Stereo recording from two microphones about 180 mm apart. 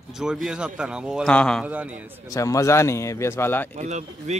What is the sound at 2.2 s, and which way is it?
A man's voice, 15° left (ahead or behind).